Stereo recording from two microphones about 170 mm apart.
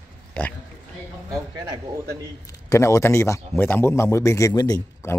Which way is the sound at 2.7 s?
15° left (ahead or behind).